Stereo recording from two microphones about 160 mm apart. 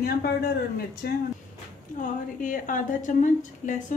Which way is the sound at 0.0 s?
75° left (ahead or behind).